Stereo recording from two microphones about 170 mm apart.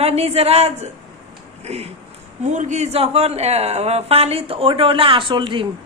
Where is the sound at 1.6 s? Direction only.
40° right (ahead or behind).